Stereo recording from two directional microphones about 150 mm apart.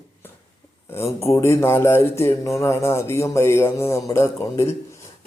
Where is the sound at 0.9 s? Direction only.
20° left (ahead or behind).